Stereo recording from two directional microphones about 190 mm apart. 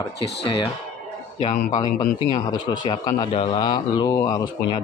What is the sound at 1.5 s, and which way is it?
Speech, 40° left (ahead or behind).